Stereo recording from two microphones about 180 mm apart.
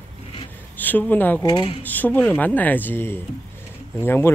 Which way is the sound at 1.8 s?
10° left (ahead or behind).